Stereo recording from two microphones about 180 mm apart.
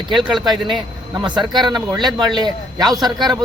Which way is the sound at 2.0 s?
25° right (ahead or behind).